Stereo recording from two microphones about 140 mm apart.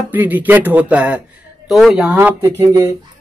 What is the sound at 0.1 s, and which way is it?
Speech, 10° right (ahead or behind).